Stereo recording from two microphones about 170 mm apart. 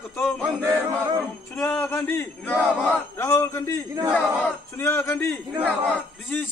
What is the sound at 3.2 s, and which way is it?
Speech, 15° left (ahead or behind).